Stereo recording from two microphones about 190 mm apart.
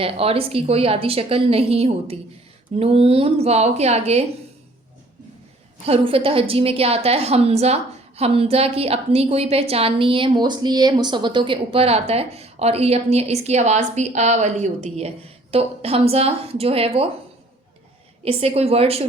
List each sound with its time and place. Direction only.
0.0 s a woman's voice: 30° right (ahead or behind)
5.8 s a woman's voice: 30° right (ahead or behind)
18.3 s a woman's voice: 30° right (ahead or behind)